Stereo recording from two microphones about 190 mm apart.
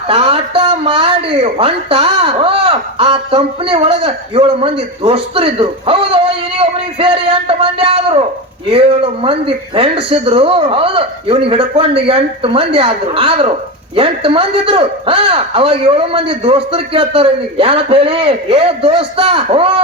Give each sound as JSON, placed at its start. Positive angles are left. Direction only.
{"t": 0.1, "sound": "a man's voice", "side_deg": -30}